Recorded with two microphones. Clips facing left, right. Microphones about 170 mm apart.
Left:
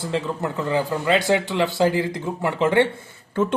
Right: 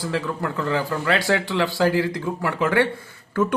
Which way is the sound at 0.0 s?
25° left (ahead or behind).